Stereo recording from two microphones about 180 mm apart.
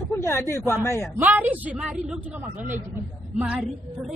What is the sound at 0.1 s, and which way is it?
Speech, 15° left (ahead or behind).